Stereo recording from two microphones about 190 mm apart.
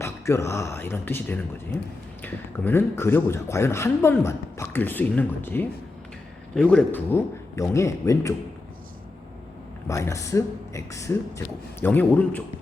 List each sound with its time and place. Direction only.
0.0 s speech: 15° left (ahead or behind)
9.8 s speech: 15° left (ahead or behind)